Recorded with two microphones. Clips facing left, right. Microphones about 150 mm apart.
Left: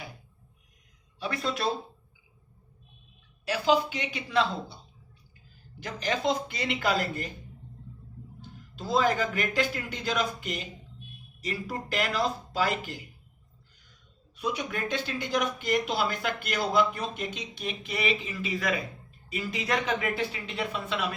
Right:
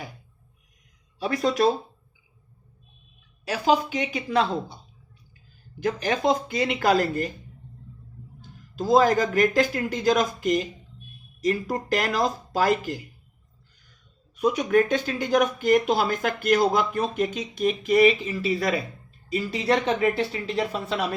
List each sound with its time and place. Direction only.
1.2 s speech: 40° right (ahead or behind)
3.4 s speech: 45° right (ahead or behind)
5.8 s speech: 50° right (ahead or behind)
8.4 s speech: 45° right (ahead or behind)
14.3 s speech: 45° right (ahead or behind)